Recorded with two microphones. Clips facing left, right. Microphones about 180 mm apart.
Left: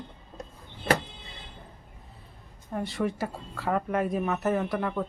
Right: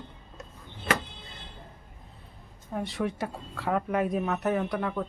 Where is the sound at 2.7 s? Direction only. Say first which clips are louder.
Left 1 dB; centre (ahead or behind).